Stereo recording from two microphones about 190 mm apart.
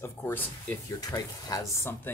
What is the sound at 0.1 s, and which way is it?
Speech, 10° left (ahead or behind).